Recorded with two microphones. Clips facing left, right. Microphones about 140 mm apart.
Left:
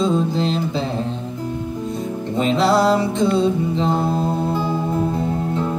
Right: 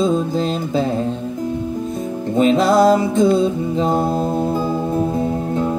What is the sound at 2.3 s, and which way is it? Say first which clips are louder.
Music: right 3 dB; 45° right (ahead or behind).